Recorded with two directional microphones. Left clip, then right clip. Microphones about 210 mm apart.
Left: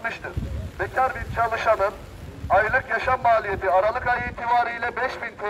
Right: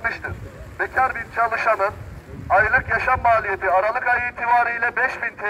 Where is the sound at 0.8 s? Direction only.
10° left (ahead or behind).